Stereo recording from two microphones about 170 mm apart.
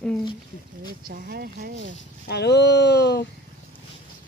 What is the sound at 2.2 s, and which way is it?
Speech, 75° left (ahead or behind).